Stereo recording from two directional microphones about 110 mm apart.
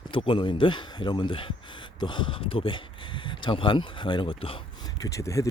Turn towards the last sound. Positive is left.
turn(degrees=30)  # may be behind; listen again after turning